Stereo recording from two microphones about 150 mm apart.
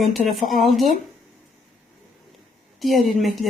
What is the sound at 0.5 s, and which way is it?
Speech, 60° right (ahead or behind).